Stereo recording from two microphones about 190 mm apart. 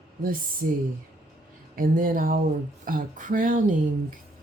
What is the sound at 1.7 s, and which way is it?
Speech, 45° right (ahead or behind).